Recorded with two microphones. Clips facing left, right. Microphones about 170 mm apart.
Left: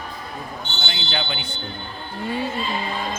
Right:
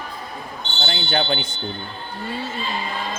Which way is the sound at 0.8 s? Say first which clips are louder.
Right 6 dB; 40° right (ahead or behind).